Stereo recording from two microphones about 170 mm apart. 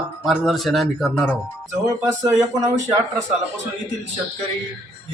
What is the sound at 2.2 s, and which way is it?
Speech, 20° right (ahead or behind).